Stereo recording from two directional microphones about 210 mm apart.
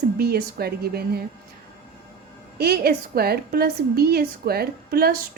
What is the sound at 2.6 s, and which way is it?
A woman's voice, 50° right (ahead or behind).